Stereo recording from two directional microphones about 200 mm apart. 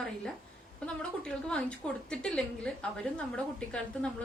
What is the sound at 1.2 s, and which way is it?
A woman's voice, 5° left (ahead or behind).